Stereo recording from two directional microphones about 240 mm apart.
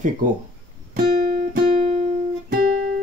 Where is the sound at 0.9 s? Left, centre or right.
Right.